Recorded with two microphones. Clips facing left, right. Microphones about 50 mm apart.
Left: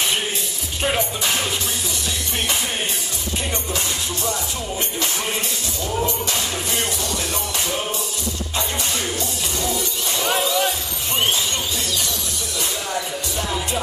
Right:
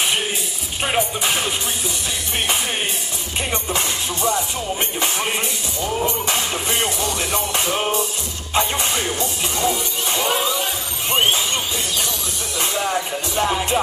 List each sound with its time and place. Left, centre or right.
0.8 s music: centre
3.7 s music: right
12.5 s music: right